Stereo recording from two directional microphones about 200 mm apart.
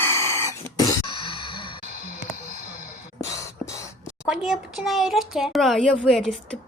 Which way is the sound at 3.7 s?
15° left (ahead or behind).